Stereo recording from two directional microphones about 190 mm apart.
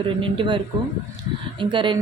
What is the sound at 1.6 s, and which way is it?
Speech, 25° right (ahead or behind).